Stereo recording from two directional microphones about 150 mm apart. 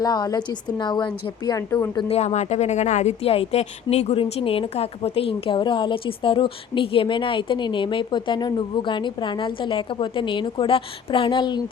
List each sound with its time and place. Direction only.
0.0 s a woman's voice: 25° left (ahead or behind)
2.0 s a woman's voice: 45° left (ahead or behind)